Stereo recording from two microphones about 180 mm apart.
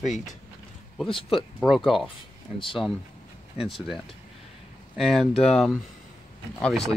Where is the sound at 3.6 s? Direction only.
Centre (ahead or behind).